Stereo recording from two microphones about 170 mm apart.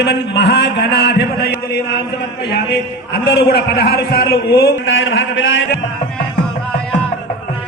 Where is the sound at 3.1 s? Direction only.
75° left (ahead or behind); by 5.6 s 90° left.